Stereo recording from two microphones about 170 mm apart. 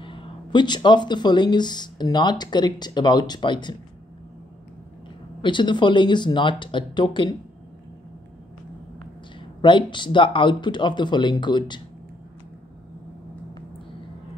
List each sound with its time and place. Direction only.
0.0 s speech: 30° left (ahead or behind)
5.4 s speech: 30° left (ahead or behind)
9.6 s speech: 30° left (ahead or behind)